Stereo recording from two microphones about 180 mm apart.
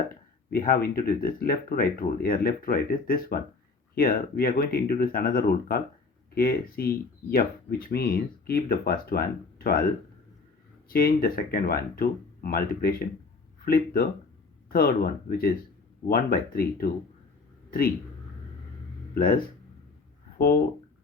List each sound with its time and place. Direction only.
0.5 s speech: 55° left (ahead or behind)
19.1 s speech: 55° left (ahead or behind)